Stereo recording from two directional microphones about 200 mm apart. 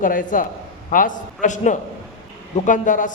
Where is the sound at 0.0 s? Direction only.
40° left (ahead or behind).